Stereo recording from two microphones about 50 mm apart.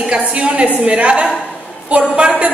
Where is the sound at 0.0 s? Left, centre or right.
Right.